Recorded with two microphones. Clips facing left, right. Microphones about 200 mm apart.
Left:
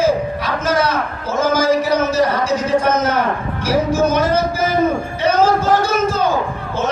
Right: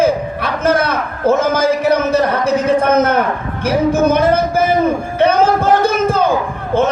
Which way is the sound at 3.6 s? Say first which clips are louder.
Right 3 dB; 55° right (ahead or behind).